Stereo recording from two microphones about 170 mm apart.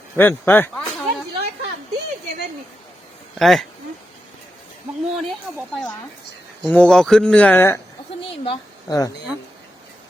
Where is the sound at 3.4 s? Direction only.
Centre (ahead or behind).